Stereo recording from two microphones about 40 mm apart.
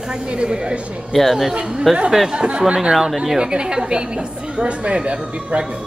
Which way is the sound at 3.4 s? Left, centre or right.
Right.